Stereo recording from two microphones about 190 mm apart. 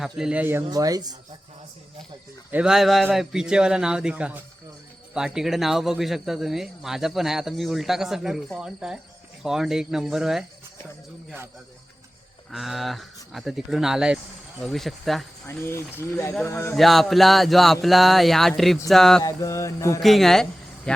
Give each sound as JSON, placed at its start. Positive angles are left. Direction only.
{"t": 0.0, "sound": "speech", "side_deg": -5}
{"t": 0.7, "sound": "speech", "side_deg": -20}
{"t": 2.5, "sound": "speech", "side_deg": -5}
{"t": 12.5, "sound": "speech", "side_deg": 0}
{"t": 15.4, "sound": "speech", "side_deg": 10}
{"t": 16.7, "sound": "speech", "side_deg": 0}
{"t": 19.2, "sound": "speech", "side_deg": 15}
{"t": 20.0, "sound": "speech", "side_deg": 0}